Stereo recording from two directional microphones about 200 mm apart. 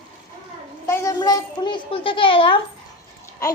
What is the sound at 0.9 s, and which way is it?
A child's voice, 15° left (ahead or behind).